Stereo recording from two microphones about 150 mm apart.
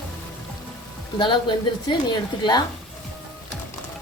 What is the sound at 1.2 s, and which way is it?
A woman's voice, 30° left (ahead or behind).